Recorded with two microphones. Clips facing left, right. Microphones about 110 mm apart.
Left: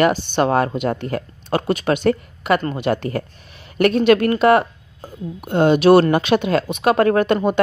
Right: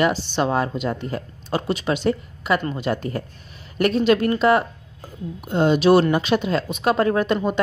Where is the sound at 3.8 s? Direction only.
65° left (ahead or behind).